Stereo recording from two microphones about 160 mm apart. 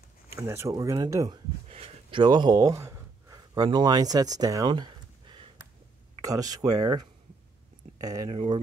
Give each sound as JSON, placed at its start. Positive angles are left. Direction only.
{"t": 0.3, "sound": "speech", "side_deg": -15}
{"t": 1.7, "sound": "a sound", "side_deg": -35}
{"t": 6.2, "sound": "speech", "side_deg": -20}